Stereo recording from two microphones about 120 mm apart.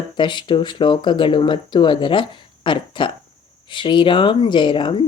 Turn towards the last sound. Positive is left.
turn(degrees=45)  # may be behind; listen again after turning